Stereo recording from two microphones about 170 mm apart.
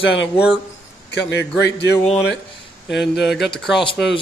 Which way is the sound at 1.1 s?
90° left.